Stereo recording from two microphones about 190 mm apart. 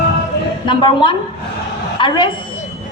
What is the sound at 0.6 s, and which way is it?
A woman's voice, 25° left (ahead or behind).